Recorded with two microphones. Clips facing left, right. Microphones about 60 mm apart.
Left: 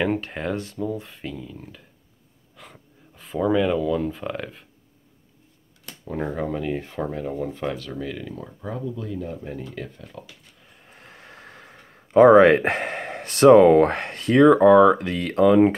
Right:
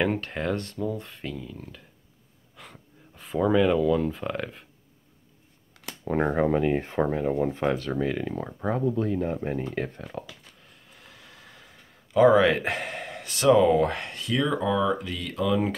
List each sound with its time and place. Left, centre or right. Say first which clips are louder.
0.0 s speech: left 2 dB; centre
6.0 s speech: right 4 dB; right
10.9 s speech: left 6 dB; left